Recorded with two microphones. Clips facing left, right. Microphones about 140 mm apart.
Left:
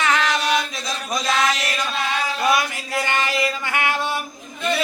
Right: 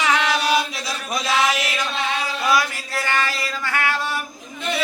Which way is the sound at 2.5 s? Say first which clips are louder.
Right 2 dB; 20° left (ahead or behind).